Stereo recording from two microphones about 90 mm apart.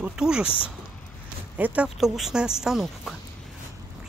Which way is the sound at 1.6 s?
15° right (ahead or behind).